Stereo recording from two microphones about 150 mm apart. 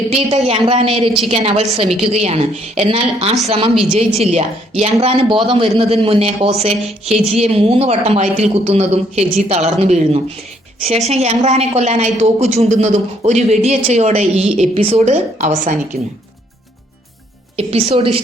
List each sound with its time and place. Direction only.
0.1 s a man's voice: 40° right (ahead or behind)
17.6 s a woman's voice: 40° right (ahead or behind)